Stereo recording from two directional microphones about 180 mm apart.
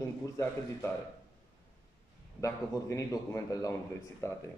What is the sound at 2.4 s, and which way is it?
Speech, 20° left (ahead or behind).